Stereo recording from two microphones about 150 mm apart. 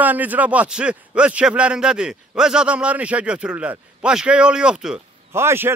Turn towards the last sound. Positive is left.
turn(degrees=-15)  # may be behind; listen again after turning